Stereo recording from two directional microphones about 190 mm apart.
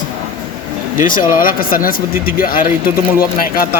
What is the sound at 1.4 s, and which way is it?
Speech, 50° left (ahead or behind).